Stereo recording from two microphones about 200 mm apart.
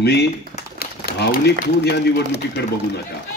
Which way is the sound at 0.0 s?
55° left (ahead or behind).